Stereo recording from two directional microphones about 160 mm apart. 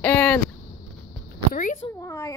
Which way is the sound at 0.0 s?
10° left (ahead or behind).